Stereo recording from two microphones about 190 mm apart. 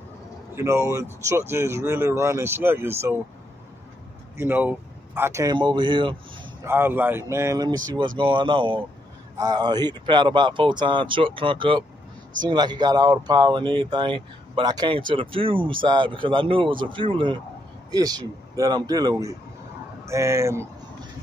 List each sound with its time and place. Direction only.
0.6 s speech: 15° right (ahead or behind)
4.4 s speech: 10° right (ahead or behind); by 6.1 s 25° right (ahead or behind)
6.6 s speech: 10° right (ahead or behind)